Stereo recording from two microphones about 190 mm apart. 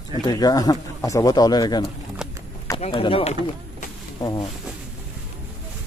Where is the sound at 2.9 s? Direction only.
25° left (ahead or behind).